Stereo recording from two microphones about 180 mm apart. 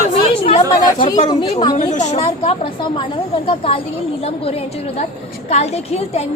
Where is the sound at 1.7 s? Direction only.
40° left (ahead or behind).